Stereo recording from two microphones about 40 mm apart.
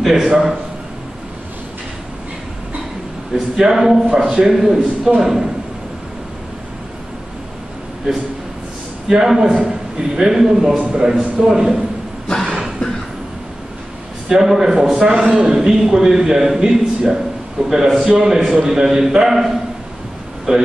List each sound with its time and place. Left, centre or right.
0.1 s a man's voice: right
3.3 s a man's voice: centre
8.1 s a man's voice: right
14.3 s a man's voice: centre
18.0 s a man's voice: right
18.3 s a man's voice: centre
20.5 s a man's voice: right